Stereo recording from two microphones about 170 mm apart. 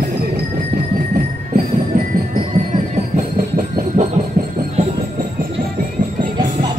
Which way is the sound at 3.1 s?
45° right (ahead or behind).